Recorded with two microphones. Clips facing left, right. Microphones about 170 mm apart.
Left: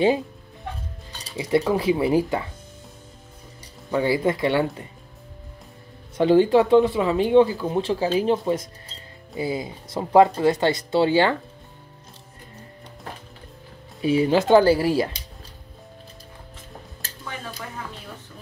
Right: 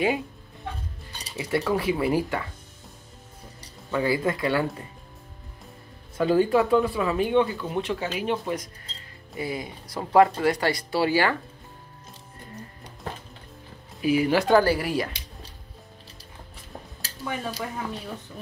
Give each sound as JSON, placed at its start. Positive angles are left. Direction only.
{"t": 1.3, "sound": "speech", "side_deg": 20}
{"t": 4.0, "sound": "speech", "side_deg": 25}
{"t": 6.1, "sound": "speech", "side_deg": 25}
{"t": 14.0, "sound": "speech", "side_deg": 30}